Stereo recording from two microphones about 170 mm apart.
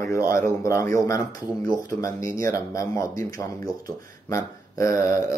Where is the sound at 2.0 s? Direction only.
20° left (ahead or behind).